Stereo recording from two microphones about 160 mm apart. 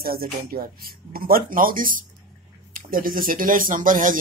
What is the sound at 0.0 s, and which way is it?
Speech, 65° right (ahead or behind).